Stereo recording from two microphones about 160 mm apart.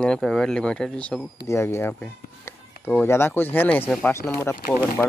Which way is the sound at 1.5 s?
15° left (ahead or behind).